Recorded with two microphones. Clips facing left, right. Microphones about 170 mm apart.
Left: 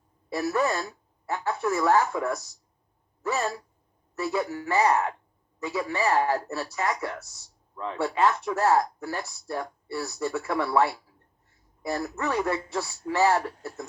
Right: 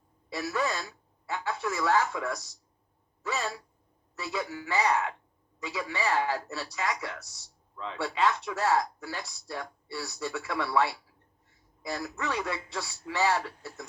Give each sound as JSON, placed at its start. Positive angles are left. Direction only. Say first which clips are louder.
{"t": 0.3, "sound": "speech", "louder": "left 5 dB", "side_deg": 40}